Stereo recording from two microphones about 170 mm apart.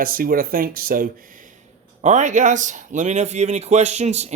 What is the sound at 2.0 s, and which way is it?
Speech, 45° right (ahead or behind).